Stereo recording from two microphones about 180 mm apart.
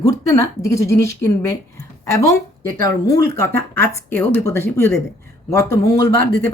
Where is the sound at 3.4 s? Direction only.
15° left (ahead or behind).